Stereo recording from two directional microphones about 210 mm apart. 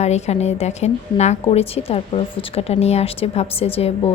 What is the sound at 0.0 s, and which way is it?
A woman's voice, 30° left (ahead or behind).